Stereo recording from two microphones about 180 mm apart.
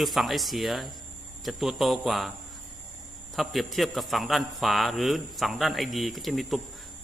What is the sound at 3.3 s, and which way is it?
A man's voice, centre (ahead or behind).